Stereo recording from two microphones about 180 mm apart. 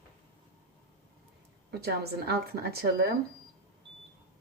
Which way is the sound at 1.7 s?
65° right (ahead or behind).